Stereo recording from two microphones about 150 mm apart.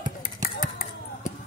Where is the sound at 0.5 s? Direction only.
75° left (ahead or behind).